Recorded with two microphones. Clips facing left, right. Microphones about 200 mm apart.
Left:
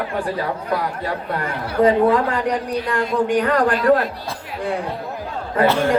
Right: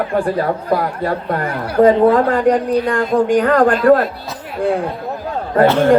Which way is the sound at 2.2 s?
50° right (ahead or behind).